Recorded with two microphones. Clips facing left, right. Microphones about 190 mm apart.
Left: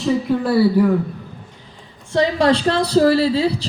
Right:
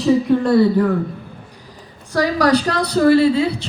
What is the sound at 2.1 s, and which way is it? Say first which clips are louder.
A woman's voice: even; 25° left (ahead or behind).